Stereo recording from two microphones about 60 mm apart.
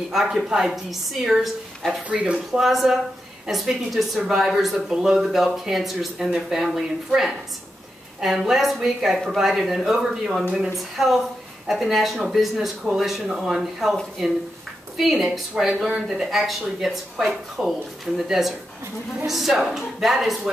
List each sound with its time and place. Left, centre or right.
0.1 s a woman's voice: centre
2.0 s speech: right
2.3 s speech: centre
15.0 s speech: centre